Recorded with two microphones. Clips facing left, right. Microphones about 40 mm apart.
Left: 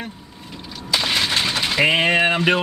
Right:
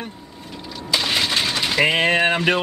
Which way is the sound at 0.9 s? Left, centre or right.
Centre.